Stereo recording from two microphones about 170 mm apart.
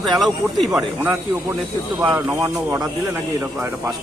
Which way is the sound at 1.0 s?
10° right (ahead or behind).